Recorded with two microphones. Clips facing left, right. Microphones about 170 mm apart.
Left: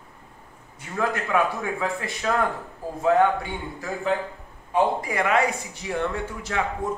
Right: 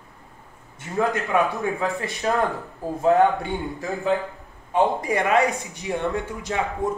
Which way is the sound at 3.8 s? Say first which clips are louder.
Right 2 dB; 20° right (ahead or behind).